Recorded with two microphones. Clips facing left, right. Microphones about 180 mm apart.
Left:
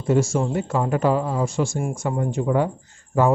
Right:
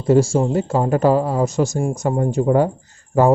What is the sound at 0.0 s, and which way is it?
Speech, 35° right (ahead or behind).